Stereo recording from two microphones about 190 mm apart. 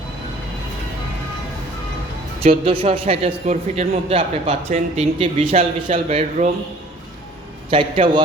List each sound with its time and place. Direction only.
2.4 s a man's voice: 30° right (ahead or behind)
7.7 s a man's voice: 25° right (ahead or behind)